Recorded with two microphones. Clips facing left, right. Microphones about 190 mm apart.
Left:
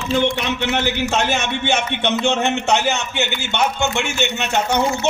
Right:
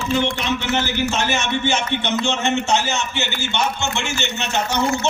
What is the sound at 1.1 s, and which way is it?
A man's voice, 60° left (ahead or behind).